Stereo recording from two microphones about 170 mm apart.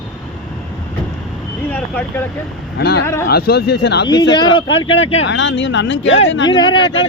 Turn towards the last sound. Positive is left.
turn(degrees=30)  # may be behind; listen again after turning